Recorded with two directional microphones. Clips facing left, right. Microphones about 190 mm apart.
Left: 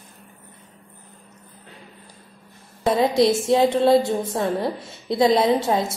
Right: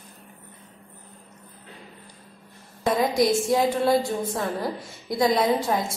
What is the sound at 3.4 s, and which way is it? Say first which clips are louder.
A woman's voice: left 4 dB; 25° left (ahead or behind).